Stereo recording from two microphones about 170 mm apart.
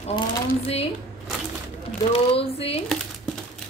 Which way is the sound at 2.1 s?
35° left (ahead or behind).